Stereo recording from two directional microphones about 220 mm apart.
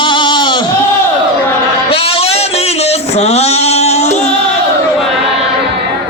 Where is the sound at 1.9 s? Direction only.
25° left (ahead or behind).